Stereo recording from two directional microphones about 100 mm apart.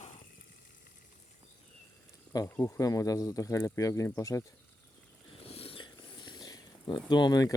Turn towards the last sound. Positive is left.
turn(degrees=40)  # may be behind; listen again after turning